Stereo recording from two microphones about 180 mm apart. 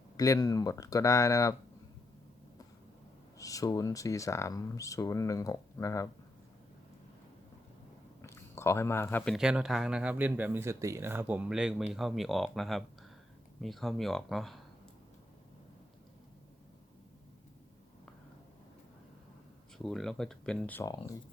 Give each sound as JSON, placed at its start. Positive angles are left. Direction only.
{"t": 0.2, "sound": "speech", "side_deg": 20}
{"t": 3.3, "sound": "speech", "side_deg": 20}
{"t": 8.2, "sound": "a sound", "side_deg": 15}
{"t": 9.3, "sound": "speech", "side_deg": -5}
{"t": 19.8, "sound": "speech", "side_deg": 0}